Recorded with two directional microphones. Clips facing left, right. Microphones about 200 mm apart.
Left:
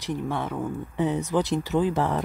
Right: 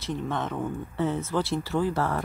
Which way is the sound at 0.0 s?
10° left (ahead or behind).